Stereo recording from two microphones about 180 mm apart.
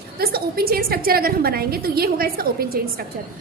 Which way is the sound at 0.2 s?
60° right (ahead or behind).